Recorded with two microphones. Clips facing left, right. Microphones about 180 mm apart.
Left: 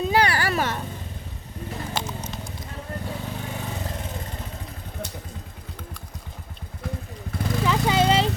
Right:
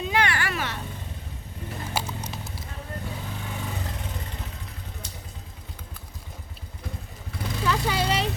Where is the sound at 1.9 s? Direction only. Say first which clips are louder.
Right 1 dB; 10° right (ahead or behind).